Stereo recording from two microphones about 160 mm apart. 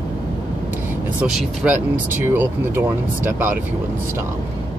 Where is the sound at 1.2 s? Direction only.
5° right (ahead or behind).